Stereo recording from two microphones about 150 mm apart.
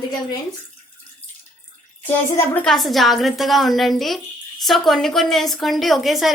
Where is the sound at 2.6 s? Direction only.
Centre (ahead or behind).